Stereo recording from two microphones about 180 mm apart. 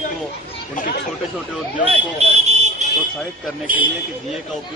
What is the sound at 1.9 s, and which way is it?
Speech, 35° right (ahead or behind).